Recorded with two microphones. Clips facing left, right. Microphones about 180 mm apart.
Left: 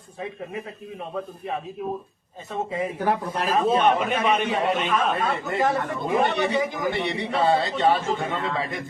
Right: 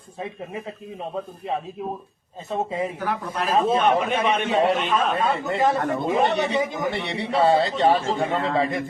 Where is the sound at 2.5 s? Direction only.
25° right (ahead or behind).